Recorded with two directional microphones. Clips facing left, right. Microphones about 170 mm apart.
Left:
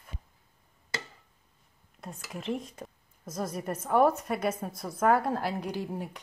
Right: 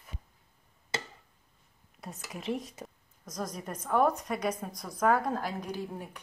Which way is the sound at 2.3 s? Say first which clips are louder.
Left 1 dB; centre (ahead or behind).